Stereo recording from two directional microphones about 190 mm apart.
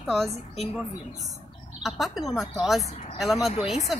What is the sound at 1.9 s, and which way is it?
Speech, centre (ahead or behind).